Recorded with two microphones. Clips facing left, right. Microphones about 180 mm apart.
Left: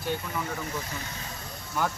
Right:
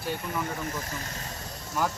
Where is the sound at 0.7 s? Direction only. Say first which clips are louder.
Even; 45° right (ahead or behind).